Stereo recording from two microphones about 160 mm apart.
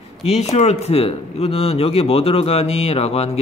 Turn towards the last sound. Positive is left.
turn(degrees=40)  # may be behind; listen again after turning